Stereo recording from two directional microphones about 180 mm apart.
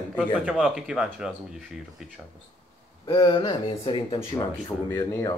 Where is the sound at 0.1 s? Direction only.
5° right (ahead or behind).